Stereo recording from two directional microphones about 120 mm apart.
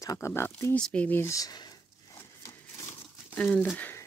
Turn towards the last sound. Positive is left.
turn(degrees=15)  # may be behind; listen again after turning